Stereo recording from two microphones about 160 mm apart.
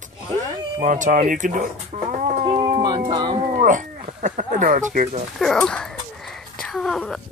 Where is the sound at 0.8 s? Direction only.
55° right (ahead or behind).